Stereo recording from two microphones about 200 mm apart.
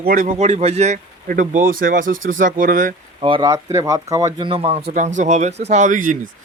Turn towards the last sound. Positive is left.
turn(degrees=-40)  # may be behind; listen again after turning